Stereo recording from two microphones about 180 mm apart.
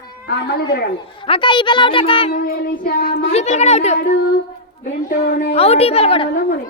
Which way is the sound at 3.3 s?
40° left (ahead or behind).